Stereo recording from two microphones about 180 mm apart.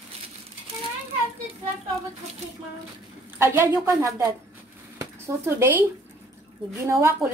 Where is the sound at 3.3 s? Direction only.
10° right (ahead or behind).